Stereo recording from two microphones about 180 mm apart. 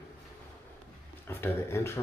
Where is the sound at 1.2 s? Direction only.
15° left (ahead or behind).